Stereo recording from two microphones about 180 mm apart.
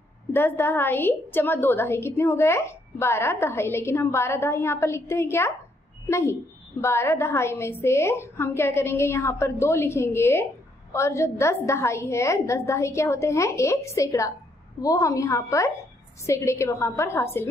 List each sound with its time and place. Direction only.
0.3 s a woman's voice: 10° left (ahead or behind)